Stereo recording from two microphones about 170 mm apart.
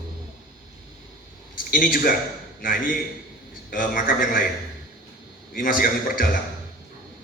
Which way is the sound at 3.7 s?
55° left (ahead or behind).